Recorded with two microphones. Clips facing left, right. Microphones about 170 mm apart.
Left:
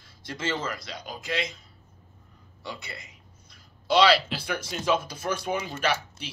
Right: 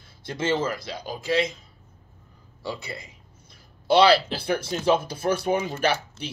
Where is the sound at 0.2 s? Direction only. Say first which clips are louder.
Right 6 dB; 25° right (ahead or behind).